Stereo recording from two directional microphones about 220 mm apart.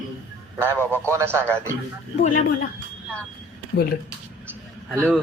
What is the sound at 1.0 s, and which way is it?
Speech, 10° right (ahead or behind).